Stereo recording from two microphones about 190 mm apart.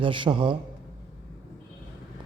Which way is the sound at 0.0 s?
25° right (ahead or behind).